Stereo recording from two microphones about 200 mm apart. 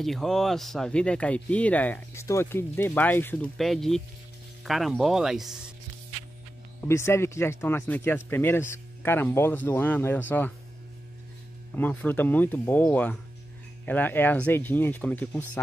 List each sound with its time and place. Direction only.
0.0 s speech: centre (ahead or behind)
6.8 s speech: 15° left (ahead or behind)
11.7 s speech: 10° left (ahead or behind)